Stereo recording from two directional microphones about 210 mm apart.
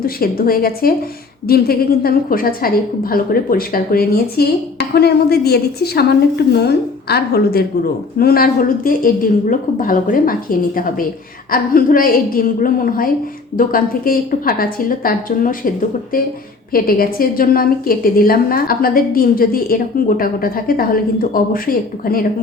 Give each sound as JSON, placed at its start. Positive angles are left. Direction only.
{"t": 0.0, "sound": "a woman's voice", "side_deg": 45}
{"t": 16.7, "sound": "a woman's voice", "side_deg": 45}